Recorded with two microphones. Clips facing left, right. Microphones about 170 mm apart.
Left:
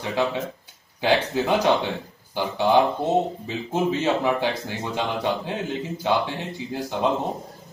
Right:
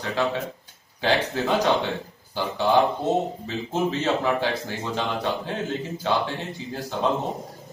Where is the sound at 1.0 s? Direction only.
15° left (ahead or behind).